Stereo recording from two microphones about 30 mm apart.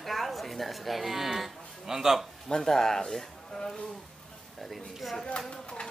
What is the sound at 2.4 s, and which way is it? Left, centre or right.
A man's voice, centre.